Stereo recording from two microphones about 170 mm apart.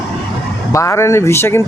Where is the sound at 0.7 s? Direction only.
15° left (ahead or behind).